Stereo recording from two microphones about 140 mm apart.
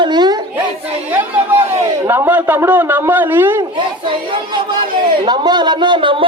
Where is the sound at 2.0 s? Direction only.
15° right (ahead or behind).